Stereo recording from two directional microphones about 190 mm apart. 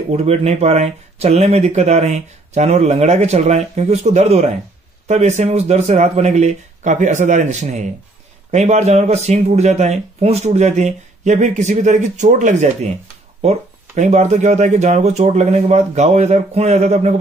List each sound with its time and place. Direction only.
0.1 s speech: 35° right (ahead or behind)